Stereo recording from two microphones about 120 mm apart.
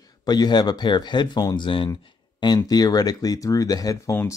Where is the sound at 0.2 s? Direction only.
35° left (ahead or behind).